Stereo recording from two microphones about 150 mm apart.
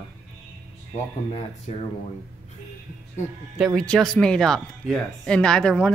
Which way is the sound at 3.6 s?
5° left (ahead or behind).